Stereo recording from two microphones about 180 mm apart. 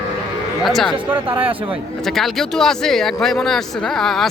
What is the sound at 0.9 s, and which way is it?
Speech, 30° right (ahead or behind).